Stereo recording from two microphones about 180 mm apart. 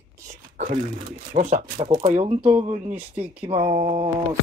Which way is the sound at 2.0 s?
40° right (ahead or behind).